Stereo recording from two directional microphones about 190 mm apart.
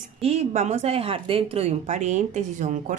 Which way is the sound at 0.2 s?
35° right (ahead or behind).